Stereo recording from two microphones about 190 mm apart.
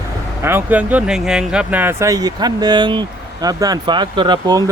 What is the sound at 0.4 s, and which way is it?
Speech, 10° right (ahead or behind).